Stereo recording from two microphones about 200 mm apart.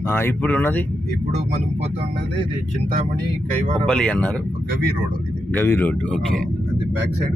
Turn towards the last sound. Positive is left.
turn(degrees=10)  # may be behind; listen again after turning